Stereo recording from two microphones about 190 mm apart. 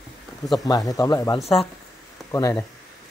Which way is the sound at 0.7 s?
20° left (ahead or behind).